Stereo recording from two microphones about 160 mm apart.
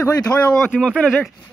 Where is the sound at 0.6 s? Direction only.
Centre (ahead or behind).